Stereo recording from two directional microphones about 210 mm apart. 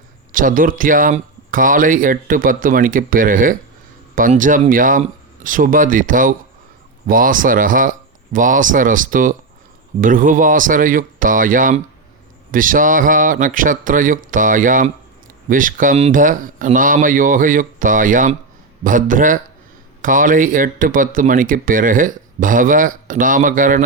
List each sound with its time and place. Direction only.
0.3 s speech: 40° right (ahead or behind)